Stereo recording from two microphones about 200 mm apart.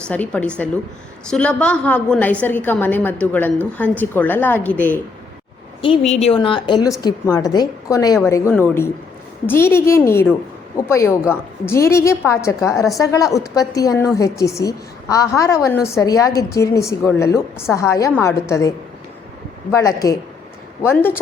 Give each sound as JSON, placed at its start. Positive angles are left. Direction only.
{"t": 0.1, "sound": "a woman's voice", "side_deg": 5}
{"t": 6.1, "sound": "a woman's voice", "side_deg": 35}
{"t": 19.7, "sound": "a woman's voice", "side_deg": 15}